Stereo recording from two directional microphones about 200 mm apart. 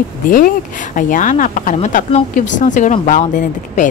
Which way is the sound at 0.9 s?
40° left (ahead or behind).